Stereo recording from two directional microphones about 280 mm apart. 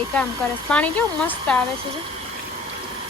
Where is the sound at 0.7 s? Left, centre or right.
Centre.